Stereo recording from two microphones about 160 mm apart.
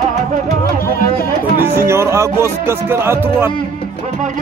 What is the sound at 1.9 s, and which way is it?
Speech, 15° right (ahead or behind).